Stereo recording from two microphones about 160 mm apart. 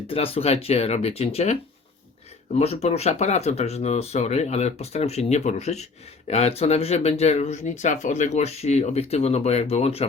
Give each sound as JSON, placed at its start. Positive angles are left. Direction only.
{"t": 0.1, "sound": "speech", "side_deg": 35}
{"t": 2.6, "sound": "speech", "side_deg": 40}